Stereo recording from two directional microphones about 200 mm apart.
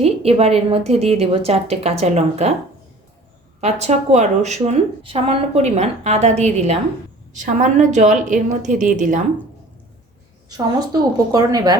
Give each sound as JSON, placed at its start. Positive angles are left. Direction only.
{"t": 0.0, "sound": "speech", "side_deg": -30}
{"t": 3.6, "sound": "speech", "side_deg": -35}
{"t": 11.3, "sound": "a woman's voice", "side_deg": -20}